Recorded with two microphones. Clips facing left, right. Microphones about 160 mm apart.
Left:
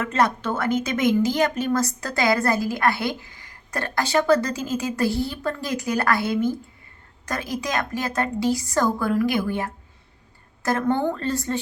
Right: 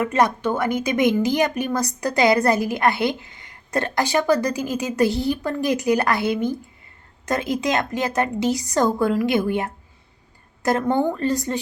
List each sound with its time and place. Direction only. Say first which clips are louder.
0.0 s a woman's voice: right 3 dB; 15° right (ahead or behind)